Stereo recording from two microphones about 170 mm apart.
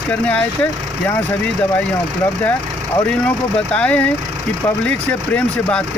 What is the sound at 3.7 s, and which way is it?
Speech, 5° left (ahead or behind).